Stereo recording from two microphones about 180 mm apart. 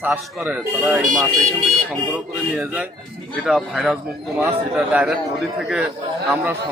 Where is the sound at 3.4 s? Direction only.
Centre (ahead or behind).